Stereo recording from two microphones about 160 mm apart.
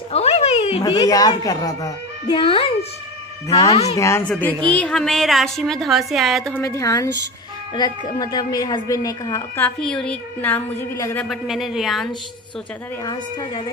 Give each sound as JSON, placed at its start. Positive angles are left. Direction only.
{"t": 0.1, "sound": "a sound", "side_deg": 40}
{"t": 0.8, "sound": "a child's voice", "side_deg": 25}
{"t": 3.4, "sound": "a child's voice", "side_deg": 20}
{"t": 6.5, "sound": "a child's voice", "side_deg": 20}
{"t": 9.8, "sound": "a woman's voice", "side_deg": 5}
{"t": 11.2, "sound": "a woman's voice", "side_deg": 0}
{"t": 13.0, "sound": "a child's voice", "side_deg": 25}